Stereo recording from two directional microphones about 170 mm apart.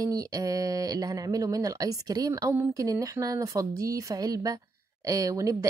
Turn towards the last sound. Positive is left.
turn(degrees=-20)  # may be behind; listen again after turning